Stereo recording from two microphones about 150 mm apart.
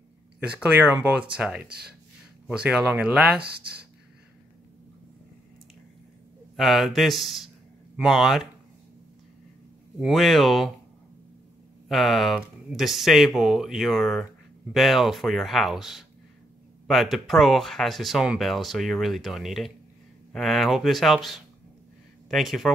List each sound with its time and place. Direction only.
0.4 s speech: 10° right (ahead or behind)
1.7 s speech: 90° right
2.4 s speech: 5° right (ahead or behind)
6.5 s a man's voice: centre (ahead or behind)
9.9 s speech: centre (ahead or behind)
11.9 s speech: centre (ahead or behind)